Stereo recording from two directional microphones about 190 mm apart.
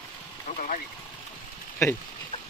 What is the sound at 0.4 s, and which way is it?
Speech, 40° left (ahead or behind).